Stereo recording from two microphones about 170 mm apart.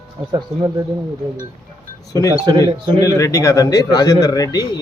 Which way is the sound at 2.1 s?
20° left (ahead or behind).